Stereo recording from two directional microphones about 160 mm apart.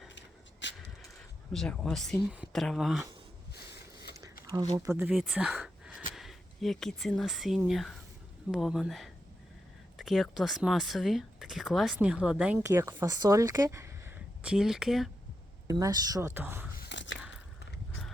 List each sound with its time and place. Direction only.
1.5 s speech: 5° left (ahead or behind)
4.4 s speech: 20° right (ahead or behind)
5.1 s speech: centre (ahead or behind)
12.6 s speech: 20° right (ahead or behind)
14.4 s speech: 5° right (ahead or behind)
15.6 s speech: 20° right (ahead or behind)
16.9 s biting: 90° left